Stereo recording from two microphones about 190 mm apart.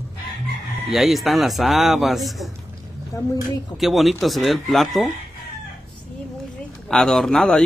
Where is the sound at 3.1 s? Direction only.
15° left (ahead or behind).